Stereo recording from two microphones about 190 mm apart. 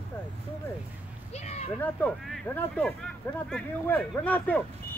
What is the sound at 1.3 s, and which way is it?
Speech, 35° left (ahead or behind).